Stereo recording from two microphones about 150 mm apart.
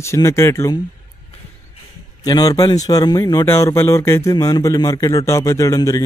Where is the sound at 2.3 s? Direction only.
25° left (ahead or behind).